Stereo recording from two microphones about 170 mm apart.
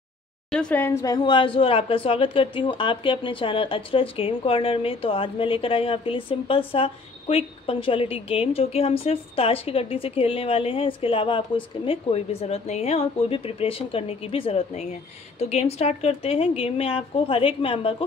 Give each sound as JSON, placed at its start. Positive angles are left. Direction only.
{"t": 0.5, "sound": "a woman's voice", "side_deg": 5}